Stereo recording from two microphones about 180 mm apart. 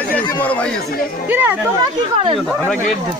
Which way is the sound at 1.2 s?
10° right (ahead or behind).